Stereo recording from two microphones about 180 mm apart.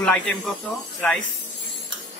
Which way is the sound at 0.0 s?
5° left (ahead or behind).